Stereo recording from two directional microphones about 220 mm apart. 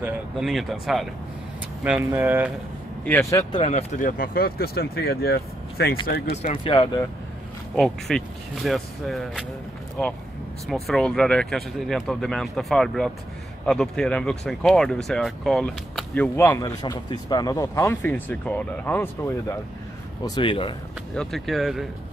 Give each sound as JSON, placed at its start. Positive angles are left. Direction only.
{"t": 0.0, "sound": "speech", "side_deg": 0}
{"t": 3.1, "sound": "speech", "side_deg": 10}
{"t": 3.6, "sound": "speech", "side_deg": 35}
{"t": 6.3, "sound": "speech", "side_deg": 25}
{"t": 7.7, "sound": "speech", "side_deg": 0}
{"t": 10.7, "sound": "speech", "side_deg": 0}
{"t": 20.2, "sound": "speech", "side_deg": 20}
{"t": 21.1, "sound": "speech", "side_deg": 0}